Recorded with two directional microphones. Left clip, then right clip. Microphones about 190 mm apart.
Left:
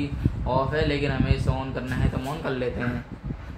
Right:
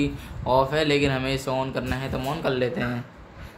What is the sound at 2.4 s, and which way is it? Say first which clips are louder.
Speech: right 4 dB; 35° right (ahead or behind).